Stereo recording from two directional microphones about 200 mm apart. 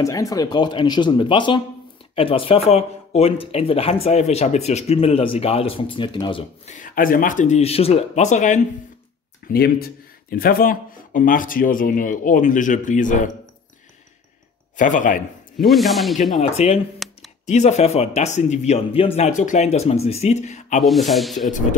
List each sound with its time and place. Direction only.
0.0 s speech: 15° left (ahead or behind)
6.6 s speech: 40° left (ahead or behind)
9.5 s speech: 50° left (ahead or behind)
14.8 s speech: 40° left (ahead or behind)
15.6 s speech: centre (ahead or behind)
16.3 s speech: 35° left (ahead or behind)
20.8 s speech: centre (ahead or behind)